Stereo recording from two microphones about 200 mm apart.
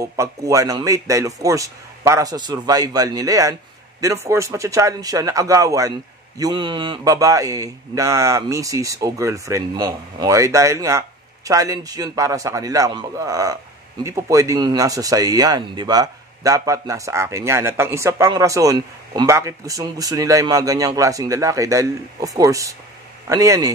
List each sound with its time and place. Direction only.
0.0 s a man's voice: 15° right (ahead or behind)